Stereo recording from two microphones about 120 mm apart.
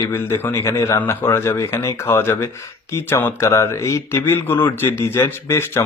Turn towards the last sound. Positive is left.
turn(degrees=20)  # may be behind; listen again after turning